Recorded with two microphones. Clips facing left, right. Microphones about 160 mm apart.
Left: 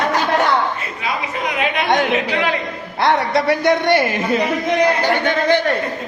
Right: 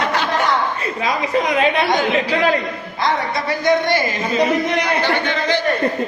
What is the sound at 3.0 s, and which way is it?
A man's voice, 70° left (ahead or behind).